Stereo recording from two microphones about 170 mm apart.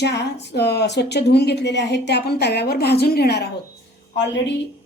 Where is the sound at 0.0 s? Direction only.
80° left.